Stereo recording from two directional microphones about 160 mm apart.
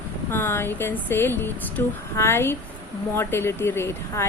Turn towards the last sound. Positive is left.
turn(degrees=15)  # may be behind; listen again after turning